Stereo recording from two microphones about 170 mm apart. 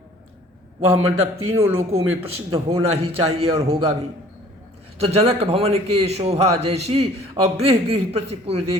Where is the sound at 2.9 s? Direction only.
35° right (ahead or behind).